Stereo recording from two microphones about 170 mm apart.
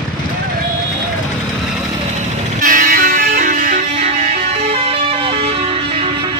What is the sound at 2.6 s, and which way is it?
Music, 55° right (ahead or behind).